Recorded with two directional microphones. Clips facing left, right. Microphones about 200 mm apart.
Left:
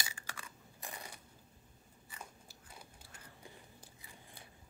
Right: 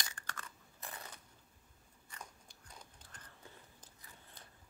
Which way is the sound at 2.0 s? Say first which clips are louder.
Left 1 dB; 5° left (ahead or behind).